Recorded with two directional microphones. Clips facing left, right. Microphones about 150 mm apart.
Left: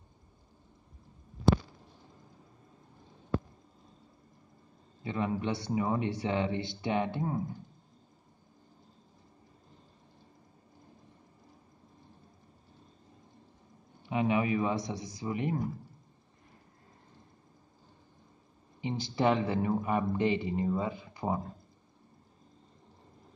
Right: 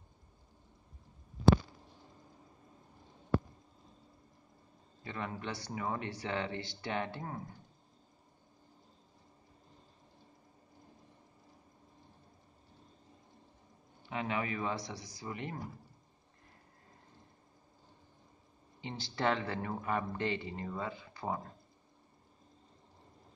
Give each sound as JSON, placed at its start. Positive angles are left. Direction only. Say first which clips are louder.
{"t": 5.0, "sound": "speech", "louder": "left 8 dB", "side_deg": 15}
{"t": 14.0, "sound": "speech", "louder": "left 8 dB", "side_deg": 15}
{"t": 18.8, "sound": "speech", "louder": "left 6 dB", "side_deg": 15}